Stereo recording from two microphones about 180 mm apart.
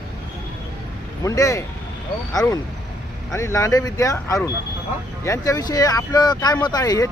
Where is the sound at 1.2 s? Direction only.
20° left (ahead or behind).